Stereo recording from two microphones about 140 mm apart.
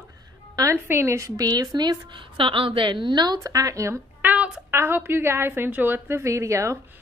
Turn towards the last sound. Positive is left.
turn(degrees=-20)  # may be behind; listen again after turning